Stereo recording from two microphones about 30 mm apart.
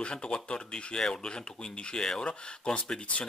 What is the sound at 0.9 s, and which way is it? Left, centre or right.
Speech, left.